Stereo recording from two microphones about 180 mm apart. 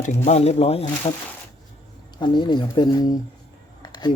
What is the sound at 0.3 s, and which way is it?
Speech, 35° left (ahead or behind).